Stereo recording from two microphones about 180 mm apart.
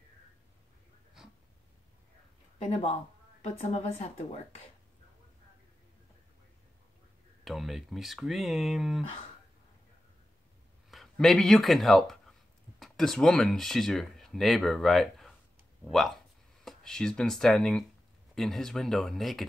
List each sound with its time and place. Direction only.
2.6 s a woman's voice: 35° left (ahead or behind)
7.4 s speech: centre (ahead or behind)
10.9 s speech: centre (ahead or behind)